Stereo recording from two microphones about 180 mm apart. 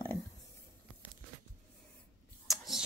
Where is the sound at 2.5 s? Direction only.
Centre (ahead or behind).